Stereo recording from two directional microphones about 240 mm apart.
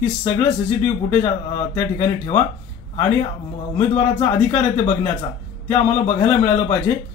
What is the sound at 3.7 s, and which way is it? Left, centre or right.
A man's voice, left.